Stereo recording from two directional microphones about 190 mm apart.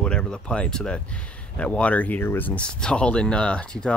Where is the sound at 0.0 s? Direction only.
5° left (ahead or behind).